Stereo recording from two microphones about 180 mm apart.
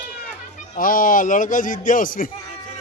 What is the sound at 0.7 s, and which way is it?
A man's voice, 50° left (ahead or behind).